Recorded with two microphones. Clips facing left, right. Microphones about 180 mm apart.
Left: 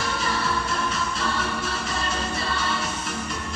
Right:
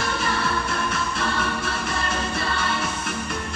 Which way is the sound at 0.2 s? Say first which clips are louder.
Right 1 dB; 60° right (ahead or behind).